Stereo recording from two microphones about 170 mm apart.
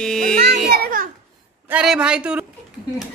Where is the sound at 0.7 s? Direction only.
60° right (ahead or behind).